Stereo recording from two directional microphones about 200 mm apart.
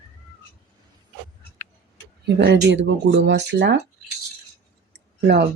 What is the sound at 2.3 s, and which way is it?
Speech, 60° right (ahead or behind).